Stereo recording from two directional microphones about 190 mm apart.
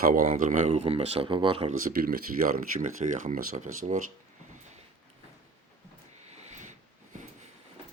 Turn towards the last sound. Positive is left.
turn(degrees=-40)  # may be behind; listen again after turning